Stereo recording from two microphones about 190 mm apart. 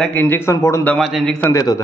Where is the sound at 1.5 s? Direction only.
15° left (ahead or behind).